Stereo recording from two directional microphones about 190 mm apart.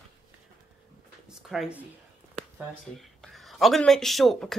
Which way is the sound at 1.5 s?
Centre (ahead or behind).